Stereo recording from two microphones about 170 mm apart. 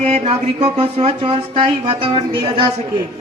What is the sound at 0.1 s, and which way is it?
Speech, 35° right (ahead or behind).